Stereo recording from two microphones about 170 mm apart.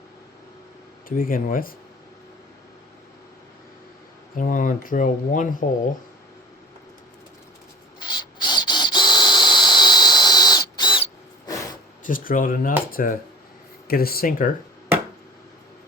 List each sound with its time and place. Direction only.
1.0 s speech: 55° left (ahead or behind)
4.4 s speech: 50° left (ahead or behind)
7.9 s a sound: 25° left (ahead or behind)
12.0 s speech: 55° left (ahead or behind)